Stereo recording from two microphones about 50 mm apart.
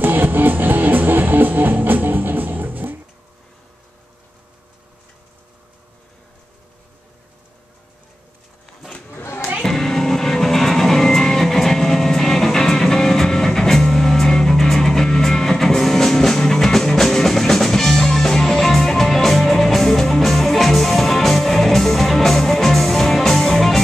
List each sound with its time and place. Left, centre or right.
0.0 s music: right
9.1 s a sound: left
9.6 s music: centre